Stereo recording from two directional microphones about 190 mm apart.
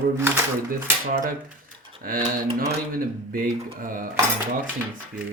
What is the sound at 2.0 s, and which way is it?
Speech, 50° right (ahead or behind).